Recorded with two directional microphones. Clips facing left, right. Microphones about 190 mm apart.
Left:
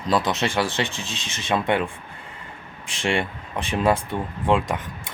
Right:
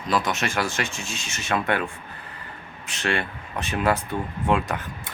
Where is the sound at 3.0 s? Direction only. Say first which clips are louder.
Left 3 dB; 25° left (ahead or behind).